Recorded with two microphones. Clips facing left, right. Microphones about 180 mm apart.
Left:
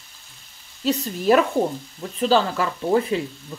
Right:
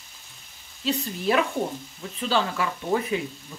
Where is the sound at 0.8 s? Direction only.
40° left (ahead or behind).